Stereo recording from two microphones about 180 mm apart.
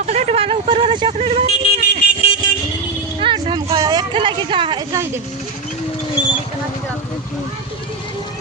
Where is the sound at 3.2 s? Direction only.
30° right (ahead or behind).